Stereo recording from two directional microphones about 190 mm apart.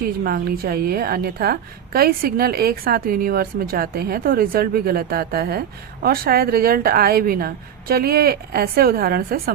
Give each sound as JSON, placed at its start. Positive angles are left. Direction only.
{"t": 0.0, "sound": "a woman's voice", "side_deg": -50}